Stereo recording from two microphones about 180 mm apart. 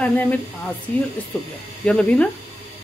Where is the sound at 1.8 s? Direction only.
5° left (ahead or behind).